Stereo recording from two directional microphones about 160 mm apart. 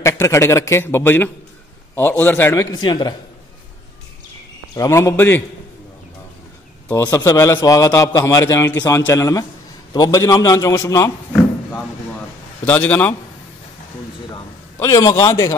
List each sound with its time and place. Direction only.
0.0 s a man's voice: 15° left (ahead or behind)
4.7 s a man's voice: 20° left (ahead or behind)
6.9 s a man's voice: 25° left (ahead or behind)
12.6 s a man's voice: 10° left (ahead or behind)
14.3 s a sound: 20° left (ahead or behind)